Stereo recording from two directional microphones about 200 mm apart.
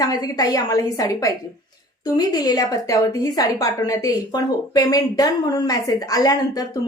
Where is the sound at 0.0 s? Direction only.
20° left (ahead or behind).